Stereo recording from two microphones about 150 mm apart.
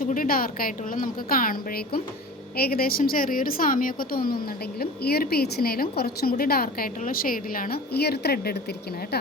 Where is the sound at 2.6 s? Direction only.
90° left.